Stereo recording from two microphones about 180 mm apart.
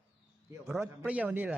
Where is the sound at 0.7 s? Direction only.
10° right (ahead or behind).